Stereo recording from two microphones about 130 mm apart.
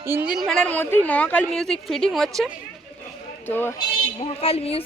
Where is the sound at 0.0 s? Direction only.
20° right (ahead or behind).